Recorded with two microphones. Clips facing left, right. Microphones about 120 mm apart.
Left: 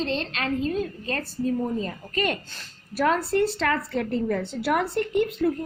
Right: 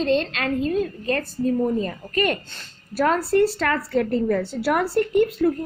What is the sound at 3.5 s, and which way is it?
A woman's voice, 50° right (ahead or behind).